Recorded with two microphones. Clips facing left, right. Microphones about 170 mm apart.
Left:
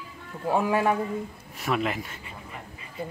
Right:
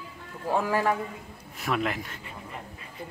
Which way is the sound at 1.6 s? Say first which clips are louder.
Left 1 dB; centre (ahead or behind).